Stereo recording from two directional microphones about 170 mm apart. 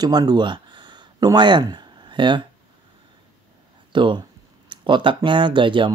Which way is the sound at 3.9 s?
30° right (ahead or behind).